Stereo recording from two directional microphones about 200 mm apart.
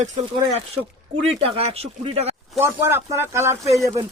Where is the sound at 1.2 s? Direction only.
30° right (ahead or behind).